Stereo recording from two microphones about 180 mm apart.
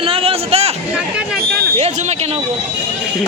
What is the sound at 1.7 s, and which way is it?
Speech, 40° right (ahead or behind).